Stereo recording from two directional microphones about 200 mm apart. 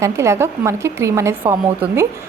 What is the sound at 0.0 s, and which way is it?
A woman's voice, 15° right (ahead or behind).